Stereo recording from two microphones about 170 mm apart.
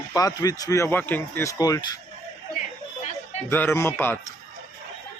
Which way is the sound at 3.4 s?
15° left (ahead or behind).